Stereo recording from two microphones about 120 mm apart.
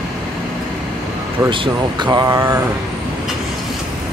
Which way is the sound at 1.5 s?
40° right (ahead or behind).